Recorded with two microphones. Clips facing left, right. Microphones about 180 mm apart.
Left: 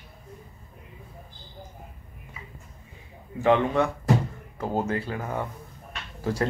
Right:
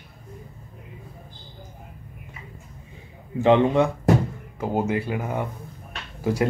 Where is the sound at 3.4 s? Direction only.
25° right (ahead or behind).